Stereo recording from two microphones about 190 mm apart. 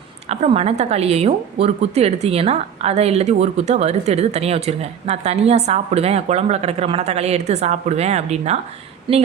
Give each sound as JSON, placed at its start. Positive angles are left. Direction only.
{"t": 0.3, "sound": "a woman's voice", "side_deg": -35}